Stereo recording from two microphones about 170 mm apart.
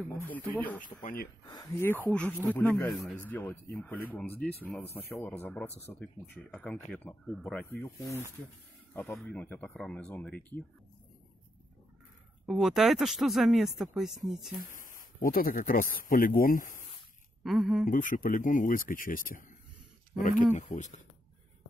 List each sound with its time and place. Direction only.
0.1 s speech: 10° left (ahead or behind)
1.0 s speech: 55° left (ahead or behind)
1.5 s speech: 25° left (ahead or behind)
2.0 s speech: 5° left (ahead or behind)
7.7 s speech: 20° left (ahead or behind)
8.9 s speech: centre (ahead or behind)
12.4 s speech: centre (ahead or behind)
14.7 s speech: 55° left (ahead or behind)
17.4 s speech: centre (ahead or behind)
17.8 s speech: 50° left (ahead or behind)
20.5 s speech: 45° left (ahead or behind)